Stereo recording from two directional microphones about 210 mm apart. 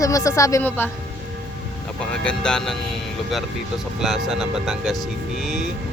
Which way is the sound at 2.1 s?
5° left (ahead or behind).